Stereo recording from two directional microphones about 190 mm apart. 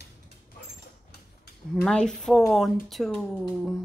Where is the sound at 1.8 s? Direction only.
5° left (ahead or behind).